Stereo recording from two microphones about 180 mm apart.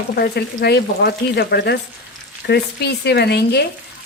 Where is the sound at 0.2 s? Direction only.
65° left (ahead or behind).